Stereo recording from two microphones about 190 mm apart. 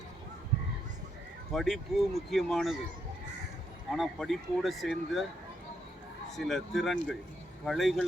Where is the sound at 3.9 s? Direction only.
Centre (ahead or behind).